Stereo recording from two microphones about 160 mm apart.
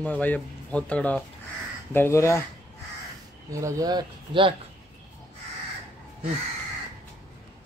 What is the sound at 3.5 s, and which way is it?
Speech, 20° right (ahead or behind).